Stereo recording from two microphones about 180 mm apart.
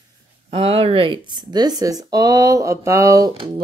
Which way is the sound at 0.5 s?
30° right (ahead or behind).